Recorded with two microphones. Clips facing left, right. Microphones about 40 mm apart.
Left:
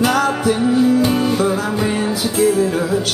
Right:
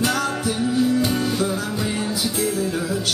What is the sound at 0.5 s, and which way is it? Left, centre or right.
Music, left.